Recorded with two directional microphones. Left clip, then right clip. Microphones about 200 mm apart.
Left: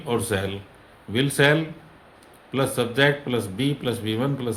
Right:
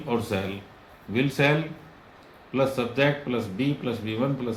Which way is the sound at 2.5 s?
55° left (ahead or behind).